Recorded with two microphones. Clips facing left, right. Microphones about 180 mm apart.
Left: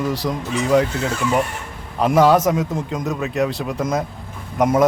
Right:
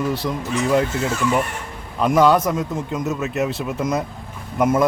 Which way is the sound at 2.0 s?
45° left (ahead or behind).